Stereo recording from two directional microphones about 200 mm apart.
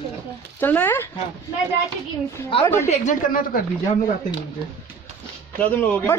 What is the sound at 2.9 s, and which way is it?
Speech, 40° left (ahead or behind).